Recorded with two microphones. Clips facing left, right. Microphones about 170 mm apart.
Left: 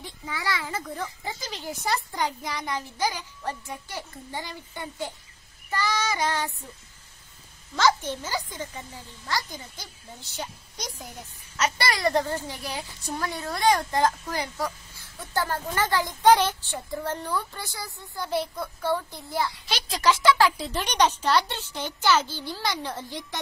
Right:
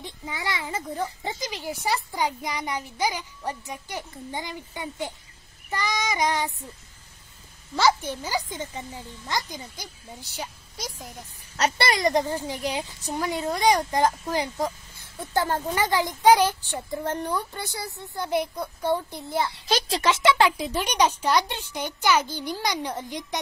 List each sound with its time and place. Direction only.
0.0 s a child's voice: 20° right (ahead or behind)
5.7 s child singing: 15° right (ahead or behind)
7.7 s speech: 15° right (ahead or behind)
10.3 s a woman's voice: 5° right (ahead or behind)
11.5 s speech: 35° right (ahead or behind)
11.9 s a child's voice: 15° right (ahead or behind)
19.6 s a child's voice: 40° right (ahead or behind)
20.0 s speech: 25° right (ahead or behind)